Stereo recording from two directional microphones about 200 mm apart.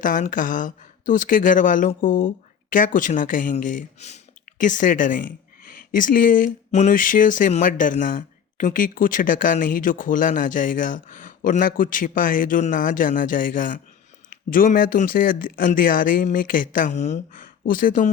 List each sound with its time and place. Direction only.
0.0 s speech: 40° left (ahead or behind)